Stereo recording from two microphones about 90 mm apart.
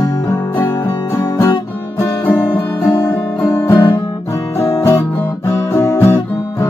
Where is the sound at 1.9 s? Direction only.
25° left (ahead or behind).